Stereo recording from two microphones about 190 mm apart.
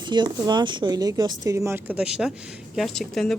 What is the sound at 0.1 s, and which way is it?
Speech, 25° right (ahead or behind).